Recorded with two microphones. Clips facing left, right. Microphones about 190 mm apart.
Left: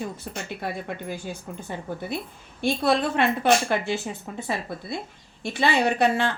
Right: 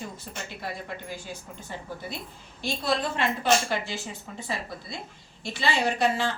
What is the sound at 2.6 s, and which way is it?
Speech, 60° left (ahead or behind).